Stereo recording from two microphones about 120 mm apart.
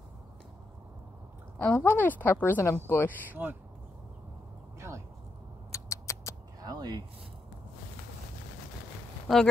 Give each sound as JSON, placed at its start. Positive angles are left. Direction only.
{"t": 1.6, "sound": "a woman's voice", "side_deg": 10}
{"t": 3.4, "sound": "speech", "side_deg": -15}
{"t": 4.7, "sound": "a sound", "side_deg": -25}
{"t": 5.7, "sound": "rodents", "side_deg": 25}
{"t": 6.6, "sound": "a sound", "side_deg": -35}
{"t": 9.3, "sound": "speech", "side_deg": 0}